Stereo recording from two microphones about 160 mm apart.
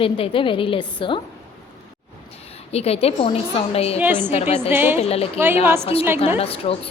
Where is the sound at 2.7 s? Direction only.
40° left (ahead or behind).